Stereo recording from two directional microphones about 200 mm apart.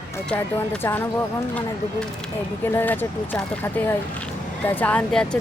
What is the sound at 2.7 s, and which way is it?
Speech, 10° left (ahead or behind).